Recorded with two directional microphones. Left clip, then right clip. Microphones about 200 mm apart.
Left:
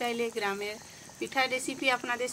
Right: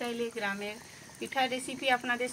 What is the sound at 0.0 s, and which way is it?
Speech, 50° left (ahead or behind).